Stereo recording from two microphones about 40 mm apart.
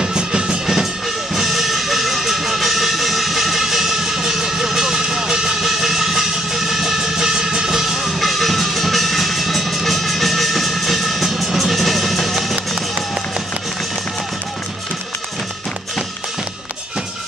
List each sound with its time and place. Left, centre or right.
0.0 s music: centre
1.3 s music: centre
8.0 s music: centre